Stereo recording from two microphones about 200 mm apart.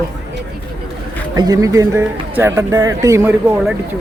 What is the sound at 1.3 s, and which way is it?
Speech, 20° right (ahead or behind).